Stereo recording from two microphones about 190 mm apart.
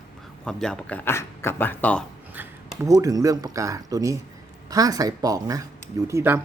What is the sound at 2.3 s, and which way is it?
A man's voice, 15° right (ahead or behind).